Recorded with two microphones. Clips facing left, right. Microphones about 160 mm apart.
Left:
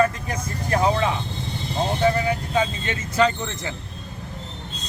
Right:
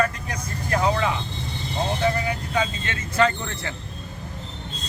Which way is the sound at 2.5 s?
15° left (ahead or behind).